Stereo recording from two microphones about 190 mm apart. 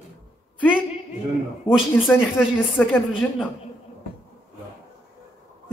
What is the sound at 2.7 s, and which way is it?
Speech, centre (ahead or behind).